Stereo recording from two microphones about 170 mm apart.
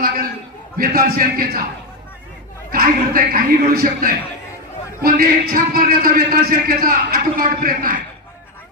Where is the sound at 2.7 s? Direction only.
55° right (ahead or behind).